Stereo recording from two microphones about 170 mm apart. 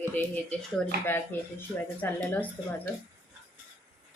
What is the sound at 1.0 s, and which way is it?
A woman's voice, 10° left (ahead or behind).